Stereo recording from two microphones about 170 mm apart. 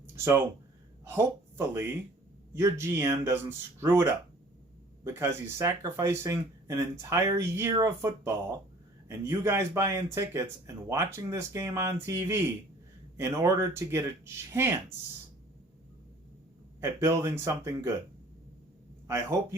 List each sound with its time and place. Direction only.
1.0 s speech: 15° right (ahead or behind)
16.8 s speech: 20° right (ahead or behind)
19.0 s speech: 15° right (ahead or behind)